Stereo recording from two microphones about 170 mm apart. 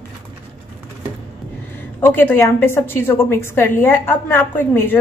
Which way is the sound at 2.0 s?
10° left (ahead or behind).